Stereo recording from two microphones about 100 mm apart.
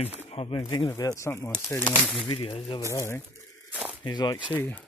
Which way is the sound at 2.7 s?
30° left (ahead or behind).